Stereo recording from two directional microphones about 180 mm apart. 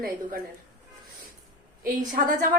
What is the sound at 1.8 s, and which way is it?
Speech, 50° right (ahead or behind).